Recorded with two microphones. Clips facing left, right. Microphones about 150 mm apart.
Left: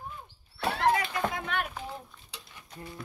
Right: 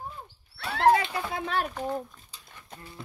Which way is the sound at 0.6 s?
70° right (ahead or behind).